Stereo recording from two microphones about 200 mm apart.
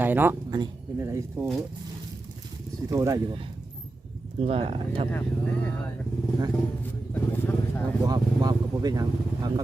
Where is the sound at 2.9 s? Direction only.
15° right (ahead or behind).